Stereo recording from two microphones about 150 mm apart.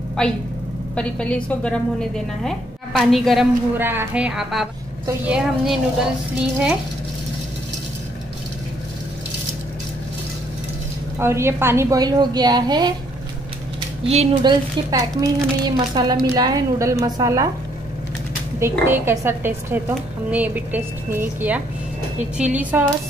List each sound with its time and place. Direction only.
0.2 s a woman's voice: 5° left (ahead or behind)
3.7 s a woman's voice: 15° right (ahead or behind)
11.1 s a woman's voice: 15° right (ahead or behind)
14.0 s speech: 45° right (ahead or behind)
14.3 s a woman's voice: 30° right (ahead or behind)
18.6 s a woman's voice: 15° right (ahead or behind)